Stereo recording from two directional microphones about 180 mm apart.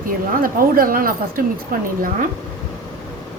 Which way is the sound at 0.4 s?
55° right (ahead or behind).